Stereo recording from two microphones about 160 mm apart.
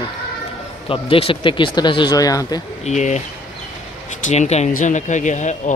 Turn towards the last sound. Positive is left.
turn(degrees=50)  # may be behind; listen again after turning